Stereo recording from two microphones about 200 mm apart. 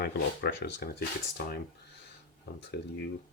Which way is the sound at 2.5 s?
55° left (ahead or behind).